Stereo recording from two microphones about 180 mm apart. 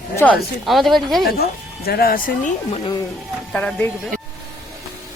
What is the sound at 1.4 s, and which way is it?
Speech, 60° left (ahead or behind).